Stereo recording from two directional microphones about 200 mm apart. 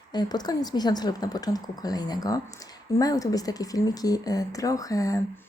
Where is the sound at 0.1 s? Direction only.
20° left (ahead or behind).